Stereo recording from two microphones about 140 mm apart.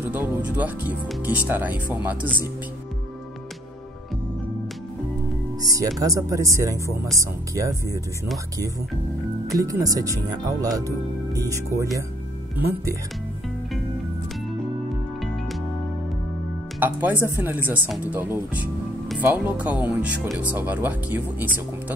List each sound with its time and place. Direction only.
0.0 s speech: 15° right (ahead or behind)
5.6 s speech: 25° right (ahead or behind)
9.6 s speech: 25° right (ahead or behind)
16.8 s speech: 15° right (ahead or behind)
17.8 s speech: centre (ahead or behind)
18.1 s speech: 10° right (ahead or behind)